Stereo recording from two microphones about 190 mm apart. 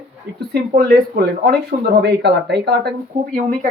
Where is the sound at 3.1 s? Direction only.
40° right (ahead or behind).